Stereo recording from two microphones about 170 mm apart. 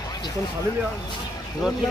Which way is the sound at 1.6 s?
Centre (ahead or behind).